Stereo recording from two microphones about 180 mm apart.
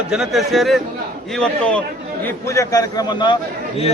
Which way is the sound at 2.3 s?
15° left (ahead or behind).